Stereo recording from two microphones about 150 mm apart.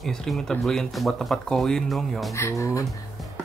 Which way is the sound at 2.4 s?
20° left (ahead or behind).